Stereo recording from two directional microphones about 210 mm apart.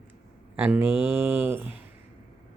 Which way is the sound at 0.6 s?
10° right (ahead or behind).